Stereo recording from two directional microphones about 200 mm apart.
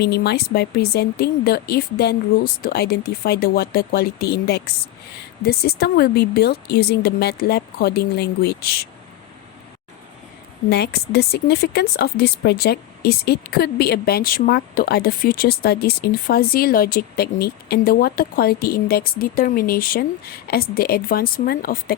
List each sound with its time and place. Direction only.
0.0 s speech: 55° left (ahead or behind)
10.7 s speech: 55° left (ahead or behind)